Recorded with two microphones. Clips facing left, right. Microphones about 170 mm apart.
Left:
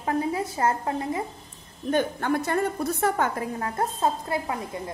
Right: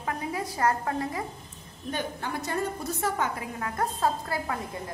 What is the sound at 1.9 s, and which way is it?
A woman's voice, 55° left (ahead or behind).